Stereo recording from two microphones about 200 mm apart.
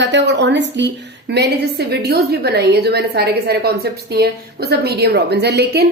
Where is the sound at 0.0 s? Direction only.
60° right (ahead or behind).